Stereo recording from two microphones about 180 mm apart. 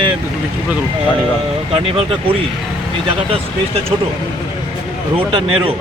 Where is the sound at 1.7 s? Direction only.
30° right (ahead or behind).